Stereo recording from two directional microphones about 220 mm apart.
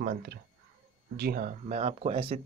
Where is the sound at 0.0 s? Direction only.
40° right (ahead or behind).